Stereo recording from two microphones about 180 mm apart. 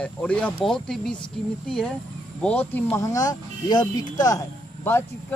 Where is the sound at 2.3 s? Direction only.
5° left (ahead or behind).